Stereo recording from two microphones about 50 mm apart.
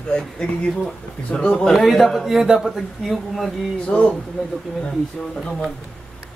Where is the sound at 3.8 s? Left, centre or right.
Left.